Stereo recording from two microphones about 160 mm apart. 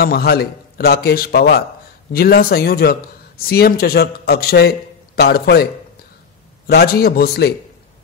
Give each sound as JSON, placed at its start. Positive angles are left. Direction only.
{"t": 0.0, "sound": "a man's voice", "side_deg": 75}
{"t": 6.7, "sound": "a man's voice", "side_deg": 75}